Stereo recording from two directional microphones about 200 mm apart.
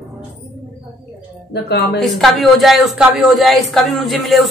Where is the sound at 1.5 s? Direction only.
55° left (ahead or behind).